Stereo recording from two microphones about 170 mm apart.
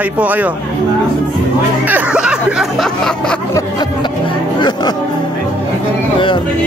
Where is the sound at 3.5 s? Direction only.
25° left (ahead or behind).